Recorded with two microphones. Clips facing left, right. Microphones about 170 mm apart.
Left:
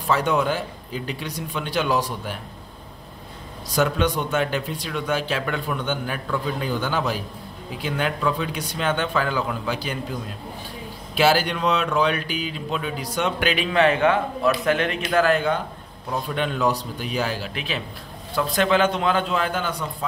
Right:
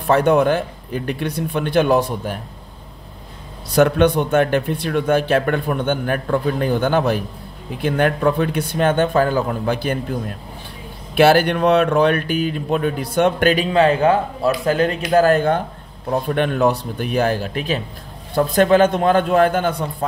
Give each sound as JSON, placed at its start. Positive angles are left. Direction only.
{"t": 0.0, "sound": "speech", "side_deg": -55}
{"t": 3.7, "sound": "a man's voice", "side_deg": -60}
{"t": 13.7, "sound": "a man's voice", "side_deg": -35}